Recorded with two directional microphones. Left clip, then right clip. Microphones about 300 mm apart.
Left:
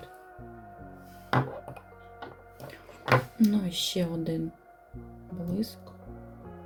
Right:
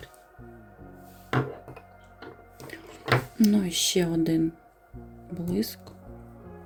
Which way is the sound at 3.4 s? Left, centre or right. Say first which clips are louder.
Right 3 dB; right.